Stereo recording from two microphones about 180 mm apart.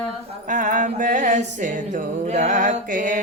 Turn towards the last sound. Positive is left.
turn(degrees=-45)  # may be behind; listen again after turning